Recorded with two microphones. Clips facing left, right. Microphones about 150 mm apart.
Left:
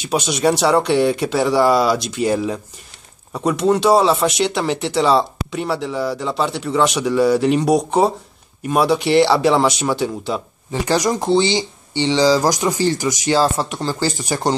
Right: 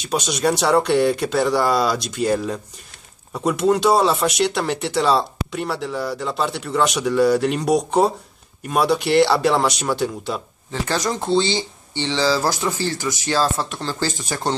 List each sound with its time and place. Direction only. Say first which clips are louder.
0.0 s speech: left 3 dB; 5° left (ahead or behind)
10.7 s speech: left 5 dB; 15° left (ahead or behind)